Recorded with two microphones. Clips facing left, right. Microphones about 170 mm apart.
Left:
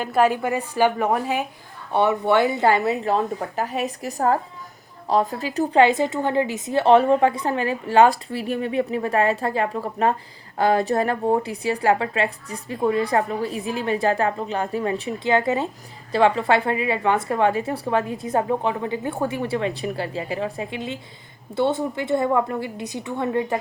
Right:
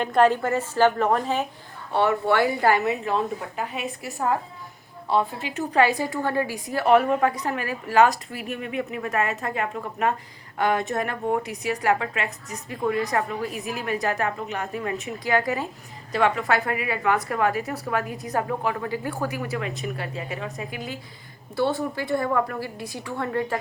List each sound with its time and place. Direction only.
0.0 s a woman's voice: 5° left (ahead or behind); by 5.8 s 35° left (ahead or behind)
5.8 s a woman's voice: 20° left (ahead or behind)